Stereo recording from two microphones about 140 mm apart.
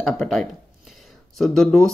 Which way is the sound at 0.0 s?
Centre (ahead or behind).